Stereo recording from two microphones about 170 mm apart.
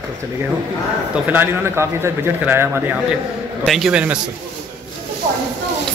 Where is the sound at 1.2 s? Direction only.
10° right (ahead or behind).